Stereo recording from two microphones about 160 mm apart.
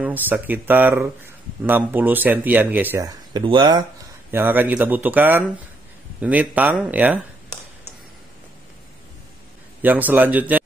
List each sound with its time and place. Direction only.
0.0 s speech: 10° right (ahead or behind)
3.3 s speech: 25° right (ahead or behind)
4.3 s speech: 10° right (ahead or behind)
9.8 s speech: 10° right (ahead or behind)